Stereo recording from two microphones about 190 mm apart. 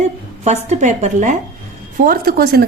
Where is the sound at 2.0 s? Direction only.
50° right (ahead or behind).